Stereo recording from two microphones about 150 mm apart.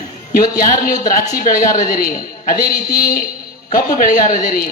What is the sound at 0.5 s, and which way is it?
A man's voice, 65° left (ahead or behind).